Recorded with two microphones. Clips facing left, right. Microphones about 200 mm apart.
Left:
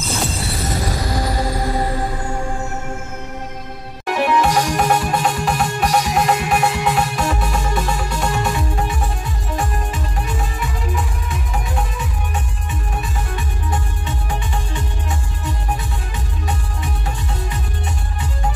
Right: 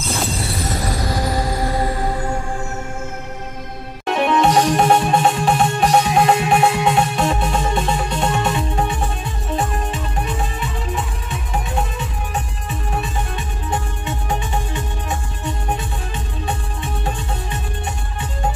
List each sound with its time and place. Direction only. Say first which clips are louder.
4.0 s music: right 1 dB; 25° right (ahead or behind)
14.7 s music: right 1 dB; 20° right (ahead or behind)